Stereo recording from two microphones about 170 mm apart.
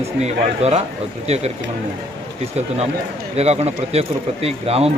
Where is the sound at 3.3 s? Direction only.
35° right (ahead or behind).